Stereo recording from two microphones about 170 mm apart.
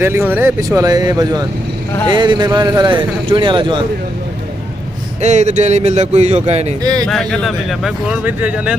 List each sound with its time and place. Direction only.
0.0 s speech: 15° right (ahead or behind)
5.2 s speech: 40° right (ahead or behind)
7.1 s speech: 5° left (ahead or behind)